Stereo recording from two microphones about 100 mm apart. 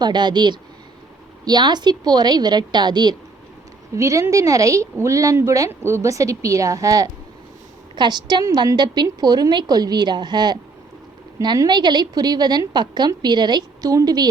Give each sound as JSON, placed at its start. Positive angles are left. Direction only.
{"t": 0.0, "sound": "a woman's voice", "side_deg": -50}
{"t": 3.9, "sound": "speech", "side_deg": -30}
{"t": 7.9, "sound": "a woman's voice", "side_deg": -45}